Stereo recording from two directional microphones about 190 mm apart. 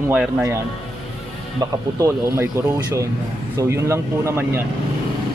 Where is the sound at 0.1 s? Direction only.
10° right (ahead or behind).